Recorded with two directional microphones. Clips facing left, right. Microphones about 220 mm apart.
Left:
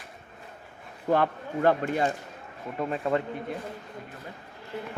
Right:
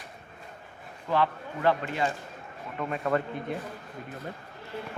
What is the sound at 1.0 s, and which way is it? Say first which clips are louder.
Speech: left 3 dB; 50° left (ahead or behind).